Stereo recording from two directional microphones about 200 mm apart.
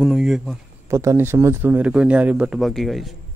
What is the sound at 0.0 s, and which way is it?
Speech, centre (ahead or behind).